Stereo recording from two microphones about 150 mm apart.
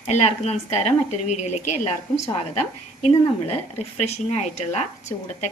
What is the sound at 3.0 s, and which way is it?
Speech, 45° left (ahead or behind).